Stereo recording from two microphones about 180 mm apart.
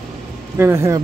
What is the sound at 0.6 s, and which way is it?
Speech, 15° right (ahead or behind).